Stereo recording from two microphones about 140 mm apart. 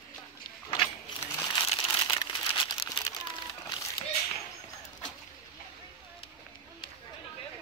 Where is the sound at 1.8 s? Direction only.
30° left (ahead or behind).